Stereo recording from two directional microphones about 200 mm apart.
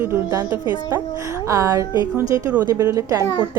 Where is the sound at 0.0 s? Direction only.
15° right (ahead or behind).